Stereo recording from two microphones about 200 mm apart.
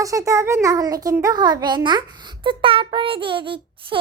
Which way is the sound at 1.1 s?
15° right (ahead or behind).